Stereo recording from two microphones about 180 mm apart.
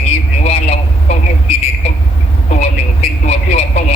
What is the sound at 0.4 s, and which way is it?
Vehicle, 35° left (ahead or behind).